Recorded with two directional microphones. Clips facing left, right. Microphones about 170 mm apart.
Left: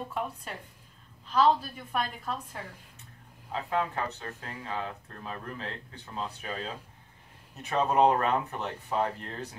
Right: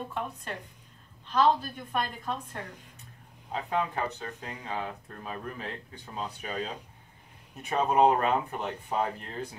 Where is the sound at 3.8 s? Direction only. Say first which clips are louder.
Right 1 dB; 15° right (ahead or behind).